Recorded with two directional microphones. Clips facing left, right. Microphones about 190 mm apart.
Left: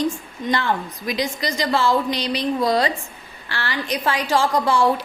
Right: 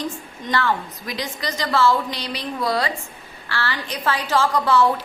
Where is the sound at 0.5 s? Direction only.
15° left (ahead or behind).